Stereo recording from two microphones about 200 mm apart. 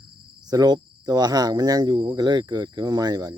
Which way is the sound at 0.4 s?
20° right (ahead or behind).